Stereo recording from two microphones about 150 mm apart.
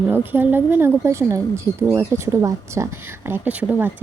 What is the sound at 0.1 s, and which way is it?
Speech, 15° right (ahead or behind).